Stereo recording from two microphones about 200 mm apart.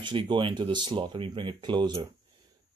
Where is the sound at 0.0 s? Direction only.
25° right (ahead or behind).